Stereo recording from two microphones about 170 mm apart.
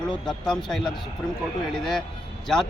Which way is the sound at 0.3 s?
5° left (ahead or behind).